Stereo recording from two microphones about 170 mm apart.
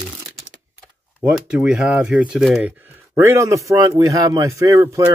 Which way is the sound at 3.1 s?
15° right (ahead or behind).